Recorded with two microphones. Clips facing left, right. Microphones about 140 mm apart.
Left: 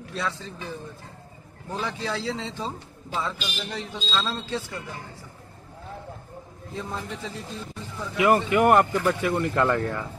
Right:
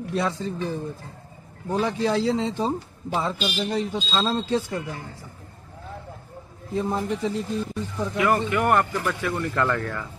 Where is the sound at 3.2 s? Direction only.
30° right (ahead or behind).